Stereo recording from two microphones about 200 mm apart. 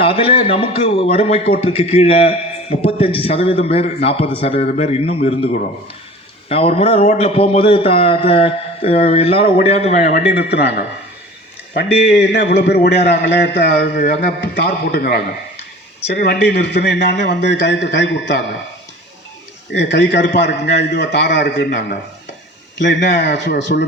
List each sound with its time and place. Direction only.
0.0 s a man's voice: 25° left (ahead or behind)
10.1 s a man's voice: 50° left (ahead or behind)
12.3 s a man's voice: 60° left (ahead or behind)
19.7 s a man's voice: 60° left (ahead or behind)